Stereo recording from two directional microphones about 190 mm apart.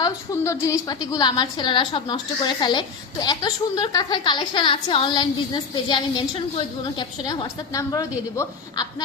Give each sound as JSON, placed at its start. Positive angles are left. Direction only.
{"t": 0.0, "sound": "a woman's voice", "side_deg": 15}